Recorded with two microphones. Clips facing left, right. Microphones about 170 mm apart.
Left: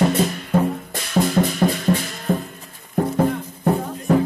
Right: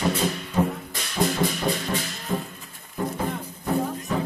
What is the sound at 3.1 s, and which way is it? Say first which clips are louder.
Music: left 9 dB; 45° left (ahead or behind).